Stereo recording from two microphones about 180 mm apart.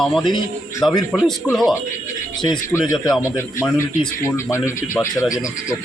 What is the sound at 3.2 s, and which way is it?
Speech, 15° left (ahead or behind).